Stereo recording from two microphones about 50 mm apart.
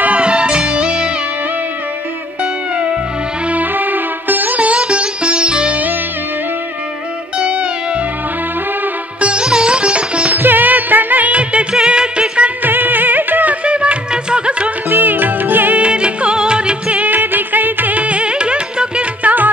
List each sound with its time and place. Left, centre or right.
0.0 s music: right
3.4 s sitar: right
7.3 s music: right
9.2 s sitar: centre
10.3 s music: right
11.7 s music: centre
12.6 s music: right
13.7 s music: right
14.9 s music: right
15.8 s music: right